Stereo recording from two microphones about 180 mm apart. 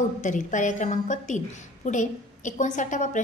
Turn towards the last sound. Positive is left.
turn(degrees=45)  # may be behind; listen again after turning